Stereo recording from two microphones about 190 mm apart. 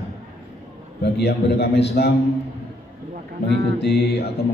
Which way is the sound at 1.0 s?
60° left (ahead or behind).